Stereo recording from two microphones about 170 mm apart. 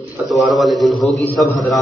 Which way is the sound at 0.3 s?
Centre (ahead or behind).